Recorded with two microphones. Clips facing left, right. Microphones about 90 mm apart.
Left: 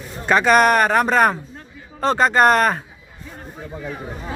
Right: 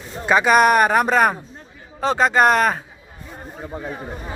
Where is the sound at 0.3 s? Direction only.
5° right (ahead or behind).